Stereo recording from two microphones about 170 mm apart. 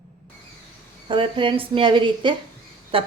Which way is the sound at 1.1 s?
30° right (ahead or behind).